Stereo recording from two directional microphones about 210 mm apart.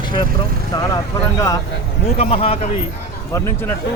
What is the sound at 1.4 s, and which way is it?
Speech, 15° left (ahead or behind).